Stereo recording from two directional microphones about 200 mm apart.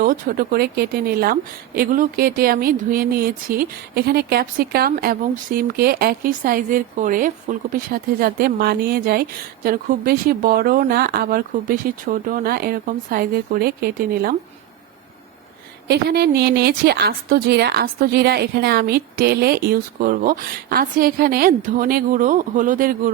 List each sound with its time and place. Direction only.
0.0 s a woman's voice: 45° right (ahead or behind)
15.9 s a woman's voice: 55° right (ahead or behind)